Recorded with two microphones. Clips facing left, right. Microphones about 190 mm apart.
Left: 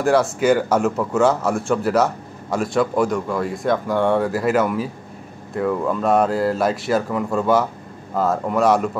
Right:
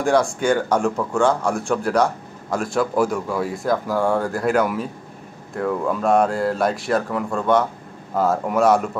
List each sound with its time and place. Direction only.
0.0 s a man's voice: 5° left (ahead or behind)